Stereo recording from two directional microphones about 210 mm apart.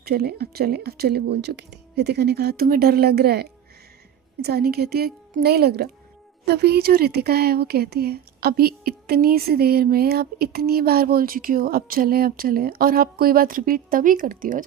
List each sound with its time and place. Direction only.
0.0 s a woman's voice: 50° right (ahead or behind)